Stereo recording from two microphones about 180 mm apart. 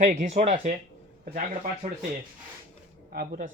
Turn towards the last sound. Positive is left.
turn(degrees=-50)  # may be behind; listen again after turning